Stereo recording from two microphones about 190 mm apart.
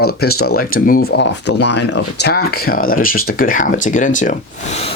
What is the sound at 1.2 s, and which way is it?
Speech, 65° left (ahead or behind).